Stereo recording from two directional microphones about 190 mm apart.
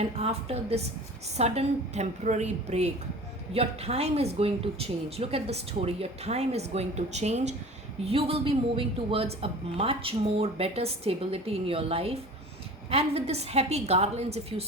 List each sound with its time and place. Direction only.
0.0 s a woman's voice: 35° right (ahead or behind)